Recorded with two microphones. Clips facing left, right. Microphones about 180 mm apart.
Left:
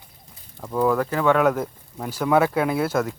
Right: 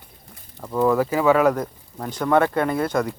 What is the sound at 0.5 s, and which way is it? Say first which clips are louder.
Speech: right 2 dB; 5° left (ahead or behind).